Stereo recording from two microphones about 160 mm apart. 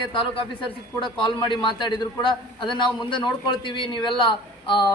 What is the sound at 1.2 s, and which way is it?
A man's voice, 30° left (ahead or behind).